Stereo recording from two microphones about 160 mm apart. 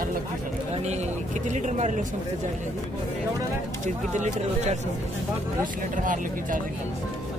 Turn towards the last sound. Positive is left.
turn(degrees=-55)  # may be behind; listen again after turning